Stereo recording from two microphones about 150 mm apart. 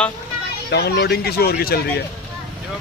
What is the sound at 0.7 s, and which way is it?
Speech, 90° left.